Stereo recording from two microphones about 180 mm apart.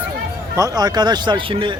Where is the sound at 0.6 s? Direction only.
20° right (ahead or behind).